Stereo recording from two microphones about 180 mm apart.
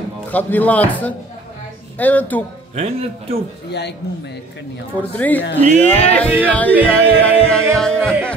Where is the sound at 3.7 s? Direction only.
70° left (ahead or behind).